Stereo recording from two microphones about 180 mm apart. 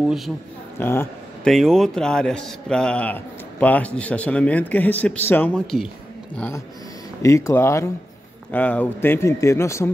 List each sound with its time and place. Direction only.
0.0 s speech: centre (ahead or behind)
0.7 s speech: 10° left (ahead or behind)
1.5 s a man's voice: centre (ahead or behind); by 9.8 s 15° left (ahead or behind)